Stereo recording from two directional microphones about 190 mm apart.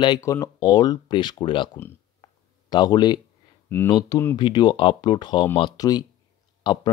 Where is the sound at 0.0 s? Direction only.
20° left (ahead or behind).